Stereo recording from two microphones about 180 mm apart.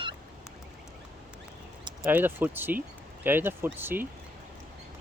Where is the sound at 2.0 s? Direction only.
10° right (ahead or behind).